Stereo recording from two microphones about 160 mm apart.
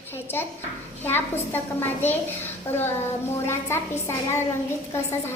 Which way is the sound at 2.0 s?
15° left (ahead or behind).